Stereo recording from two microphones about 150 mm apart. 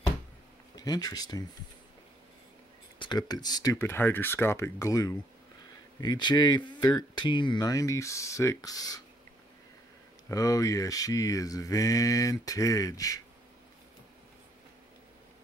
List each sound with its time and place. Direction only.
0.7 s speech: 25° left (ahead or behind)
3.0 s speech: 30° left (ahead or behind)
3.7 s speech: 15° left (ahead or behind)
10.2 s speech: 25° left (ahead or behind)